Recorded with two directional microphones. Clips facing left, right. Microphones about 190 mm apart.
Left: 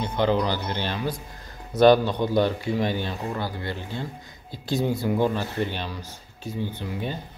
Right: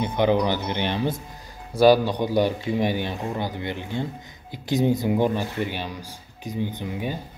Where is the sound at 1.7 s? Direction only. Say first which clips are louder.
Even; 10° right (ahead or behind).